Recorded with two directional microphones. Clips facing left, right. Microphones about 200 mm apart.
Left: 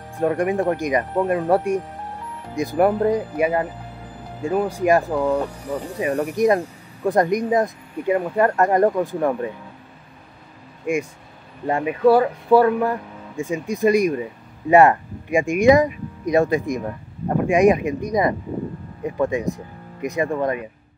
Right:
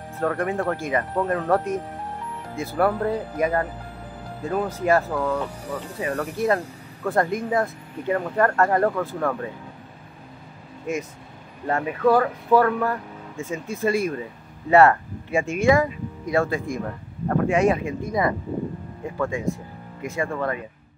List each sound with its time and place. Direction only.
0.2 s speech: 15° left (ahead or behind)
10.9 s speech: 15° left (ahead or behind)